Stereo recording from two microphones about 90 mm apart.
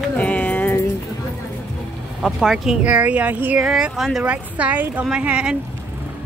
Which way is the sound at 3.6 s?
5° right (ahead or behind).